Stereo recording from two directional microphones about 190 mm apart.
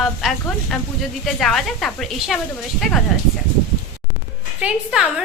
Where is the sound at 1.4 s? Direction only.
Centre (ahead or behind).